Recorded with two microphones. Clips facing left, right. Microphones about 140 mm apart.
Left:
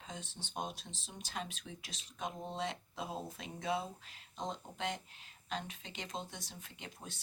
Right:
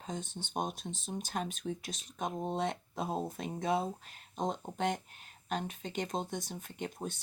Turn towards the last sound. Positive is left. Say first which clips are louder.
# right 11 dB
turn(degrees=-50)  # may be behind; listen again after turning